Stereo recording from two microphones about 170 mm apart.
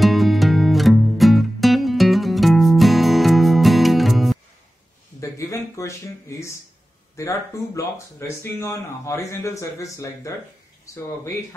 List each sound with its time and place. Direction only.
0.0 s music: centre (ahead or behind)
5.2 s a sound: 20° left (ahead or behind)
7.2 s speech: 15° left (ahead or behind)